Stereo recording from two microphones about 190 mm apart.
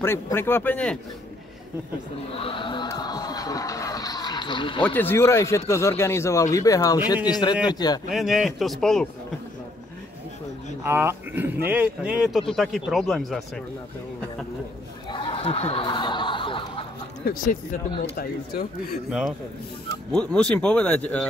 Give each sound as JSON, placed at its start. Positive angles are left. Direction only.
{"t": 0.0, "sound": "a man's voice", "side_deg": 15}
{"t": 2.3, "sound": "speech", "side_deg": 25}
{"t": 4.8, "sound": "a man's voice", "side_deg": 10}
{"t": 8.1, "sound": "speech", "side_deg": 0}
{"t": 10.8, "sound": "speech", "side_deg": -10}
{"t": 15.0, "sound": "snicker", "side_deg": 30}
{"t": 17.2, "sound": "speech", "side_deg": 50}
{"t": 19.0, "sound": "a man's voice", "side_deg": -5}